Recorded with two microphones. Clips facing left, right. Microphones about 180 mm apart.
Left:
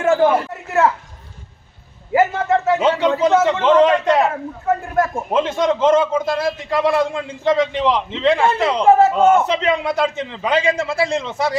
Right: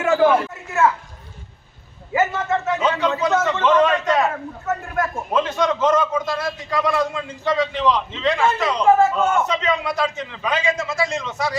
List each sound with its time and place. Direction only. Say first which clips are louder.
2.1 s a man's voice: left 4 dB; 35° left (ahead or behind)